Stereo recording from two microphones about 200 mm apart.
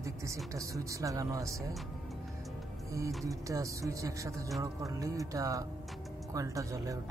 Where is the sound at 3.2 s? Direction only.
15° right (ahead or behind).